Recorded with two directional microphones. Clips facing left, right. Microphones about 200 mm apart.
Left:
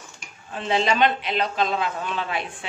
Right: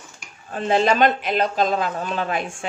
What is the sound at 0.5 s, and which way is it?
A woman's voice, 45° right (ahead or behind).